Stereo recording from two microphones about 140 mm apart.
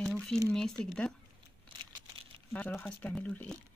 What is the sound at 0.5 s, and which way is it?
Speech, 5° left (ahead or behind).